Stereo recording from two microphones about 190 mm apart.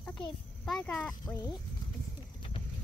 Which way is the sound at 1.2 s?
15° left (ahead or behind).